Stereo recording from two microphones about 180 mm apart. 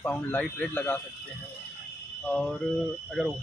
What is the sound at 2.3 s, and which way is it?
Speech, 5° left (ahead or behind).